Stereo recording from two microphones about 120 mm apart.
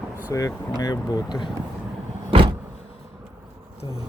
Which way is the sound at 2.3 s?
50° right (ahead or behind).